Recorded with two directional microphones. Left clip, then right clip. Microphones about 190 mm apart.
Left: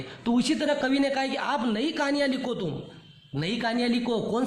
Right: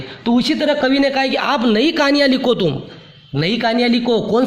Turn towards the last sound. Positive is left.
turn(degrees=-25)  # may be behind; listen again after turning